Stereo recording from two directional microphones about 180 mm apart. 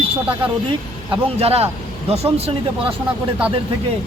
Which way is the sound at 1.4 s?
35° right (ahead or behind).